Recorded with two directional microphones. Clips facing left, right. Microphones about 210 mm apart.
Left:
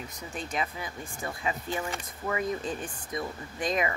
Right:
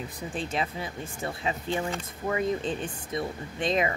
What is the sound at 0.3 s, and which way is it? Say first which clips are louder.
Speech: right 2 dB; 30° right (ahead or behind).